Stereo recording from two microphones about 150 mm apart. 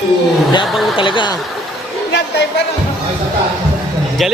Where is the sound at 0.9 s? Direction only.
35° left (ahead or behind).